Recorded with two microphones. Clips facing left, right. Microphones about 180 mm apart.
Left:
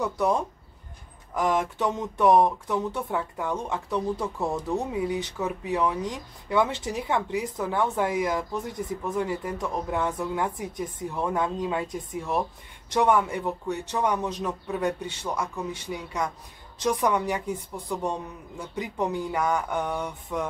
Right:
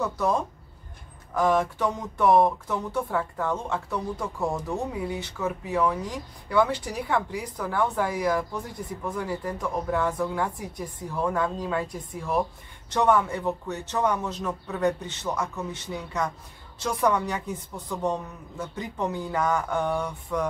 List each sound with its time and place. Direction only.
0.0 s a man's voice: 20° left (ahead or behind)
18.6 s a man's voice: 15° left (ahead or behind)